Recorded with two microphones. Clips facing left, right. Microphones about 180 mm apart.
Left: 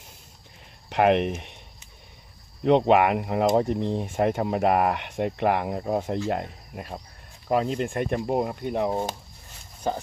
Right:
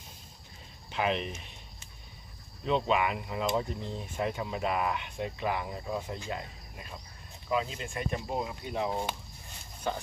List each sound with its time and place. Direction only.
0.8 s speech: 65° left (ahead or behind)
2.6 s speech: 70° left (ahead or behind); by 9.1 s 45° left (ahead or behind)